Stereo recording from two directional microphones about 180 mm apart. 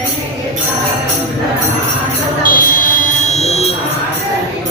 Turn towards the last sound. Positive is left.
turn(degrees=35)  # may be behind; listen again after turning